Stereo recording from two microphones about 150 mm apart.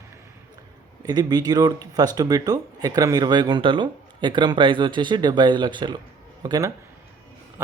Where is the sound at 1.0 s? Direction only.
25° right (ahead or behind).